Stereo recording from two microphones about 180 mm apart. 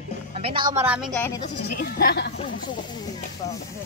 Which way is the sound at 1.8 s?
60° left (ahead or behind).